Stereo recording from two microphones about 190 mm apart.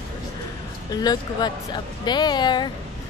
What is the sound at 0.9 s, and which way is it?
Speech, 20° left (ahead or behind).